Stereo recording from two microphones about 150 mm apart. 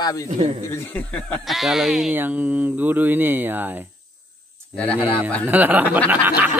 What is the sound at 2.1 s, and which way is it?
Speech, 10° right (ahead or behind).